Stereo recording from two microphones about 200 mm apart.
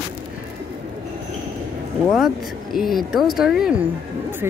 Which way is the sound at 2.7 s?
Centre (ahead or behind).